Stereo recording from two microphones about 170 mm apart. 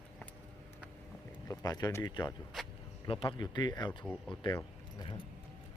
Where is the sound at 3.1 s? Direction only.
30° left (ahead or behind).